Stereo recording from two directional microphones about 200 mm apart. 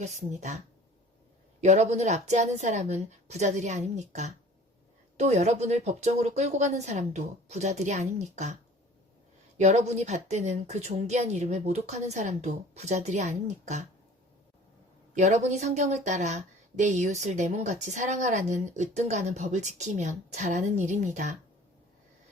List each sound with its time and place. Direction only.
0.0 s a woman's voice: 35° right (ahead or behind)
1.6 s a woman's voice: 35° right (ahead or behind)
9.6 s a woman's voice: 35° right (ahead or behind)
15.1 s a woman's voice: 35° right (ahead or behind)